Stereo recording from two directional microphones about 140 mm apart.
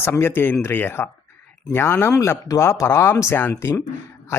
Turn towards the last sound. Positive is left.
turn(degrees=20)  # may be behind; listen again after turning